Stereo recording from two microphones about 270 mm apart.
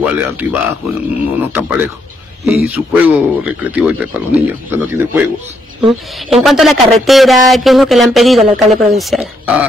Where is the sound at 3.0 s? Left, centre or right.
Centre.